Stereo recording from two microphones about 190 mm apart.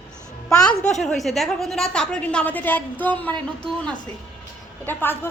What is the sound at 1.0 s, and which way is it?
A woman's voice, centre (ahead or behind).